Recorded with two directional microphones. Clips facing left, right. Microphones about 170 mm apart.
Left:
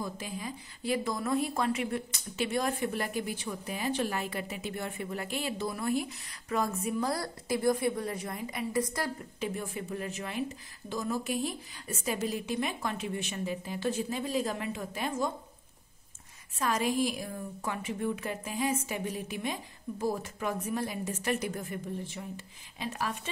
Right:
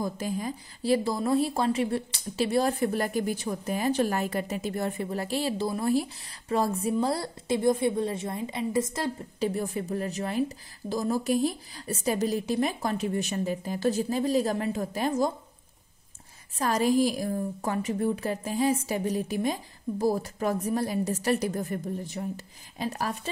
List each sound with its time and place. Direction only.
0.0 s a woman's voice: 40° right (ahead or behind); by 9.1 s 25° right (ahead or behind)
9.4 s speech: 35° right (ahead or behind)
16.5 s speech: 35° right (ahead or behind)